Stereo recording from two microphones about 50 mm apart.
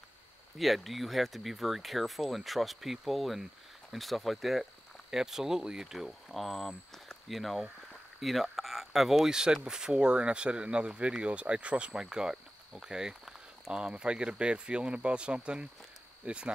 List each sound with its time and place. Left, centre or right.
0.6 s speech: centre; by 16.5 s right